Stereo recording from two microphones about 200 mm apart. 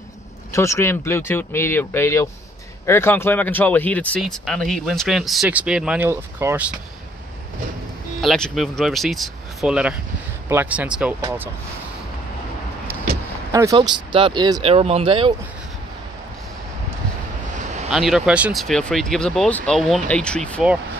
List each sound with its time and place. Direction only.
0.5 s speech: 15° left (ahead or behind); by 6.7 s 10° right (ahead or behind)
8.2 s speech: centre (ahead or behind)
12.8 s vehicle: 45° right (ahead or behind)
13.5 s speech: 15° right (ahead or behind)
17.9 s speech: centre (ahead or behind)